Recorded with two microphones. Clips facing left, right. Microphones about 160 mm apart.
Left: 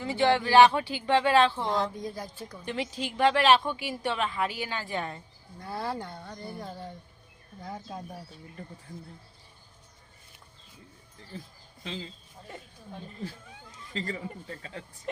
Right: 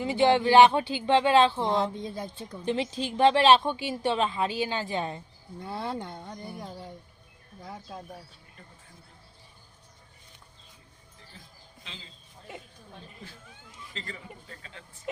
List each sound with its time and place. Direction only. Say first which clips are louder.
0.0 s a woman's voice: right 3 dB; 20° right (ahead or behind)
13.9 s speech: left 8 dB; 40° left (ahead or behind)